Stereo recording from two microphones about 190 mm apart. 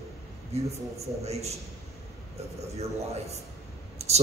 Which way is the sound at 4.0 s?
35° right (ahead or behind).